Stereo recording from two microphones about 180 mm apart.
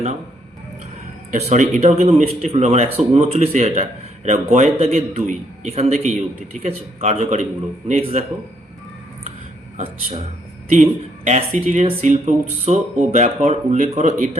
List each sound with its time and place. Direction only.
1.3 s speech: 40° right (ahead or behind)
9.7 s speech: 35° right (ahead or behind)
11.3 s speech: 40° right (ahead or behind)